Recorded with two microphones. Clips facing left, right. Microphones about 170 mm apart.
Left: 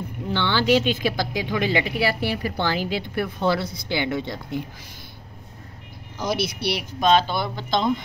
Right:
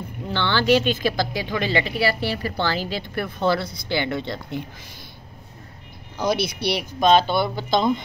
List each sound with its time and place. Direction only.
0.3 s speech: 15° left (ahead or behind)
6.3 s speech: 5° left (ahead or behind)